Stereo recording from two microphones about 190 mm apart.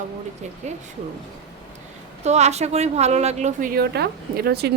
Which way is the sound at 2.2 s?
35° right (ahead or behind).